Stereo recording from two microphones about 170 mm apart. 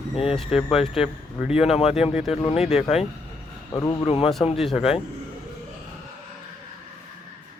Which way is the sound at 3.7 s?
20° left (ahead or behind).